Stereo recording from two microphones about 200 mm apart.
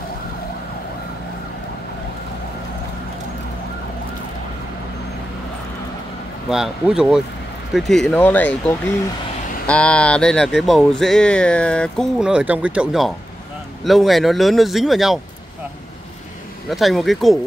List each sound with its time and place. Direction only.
6.5 s speech: 5° right (ahead or behind)
9.7 s speech: 5° left (ahead or behind)
16.6 s speech: centre (ahead or behind)